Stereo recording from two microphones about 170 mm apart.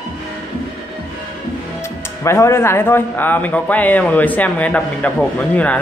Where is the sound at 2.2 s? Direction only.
15° left (ahead or behind).